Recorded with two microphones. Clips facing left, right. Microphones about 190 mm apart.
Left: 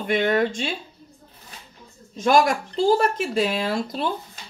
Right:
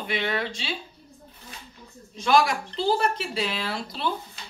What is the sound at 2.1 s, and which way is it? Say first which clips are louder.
Speech: left 3 dB; 45° left (ahead or behind).